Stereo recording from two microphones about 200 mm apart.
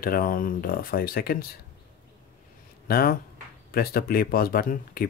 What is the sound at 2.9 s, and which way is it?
Speech, 50° left (ahead or behind).